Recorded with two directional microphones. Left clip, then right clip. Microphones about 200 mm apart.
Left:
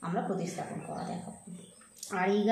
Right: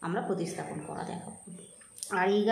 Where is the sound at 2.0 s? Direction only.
25° right (ahead or behind).